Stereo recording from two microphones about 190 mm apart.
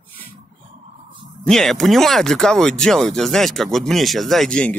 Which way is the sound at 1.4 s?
Centre (ahead or behind).